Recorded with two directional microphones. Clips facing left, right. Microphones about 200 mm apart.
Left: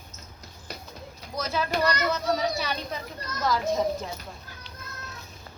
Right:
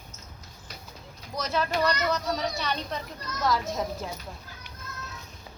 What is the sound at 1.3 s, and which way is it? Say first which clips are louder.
Speech: even; centre (ahead or behind).